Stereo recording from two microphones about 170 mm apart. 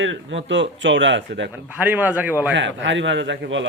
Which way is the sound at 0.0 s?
90° right.